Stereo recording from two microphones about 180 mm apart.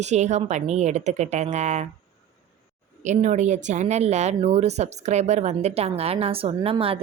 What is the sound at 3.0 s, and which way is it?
Speech, 40° right (ahead or behind).